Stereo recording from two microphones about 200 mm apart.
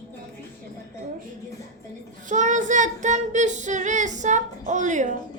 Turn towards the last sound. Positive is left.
turn(degrees=-40)  # may be behind; listen again after turning